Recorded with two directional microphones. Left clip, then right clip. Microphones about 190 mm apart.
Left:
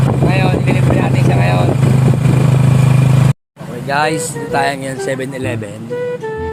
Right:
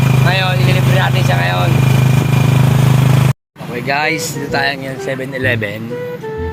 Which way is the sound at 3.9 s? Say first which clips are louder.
Left 1 dB; 5° left (ahead or behind).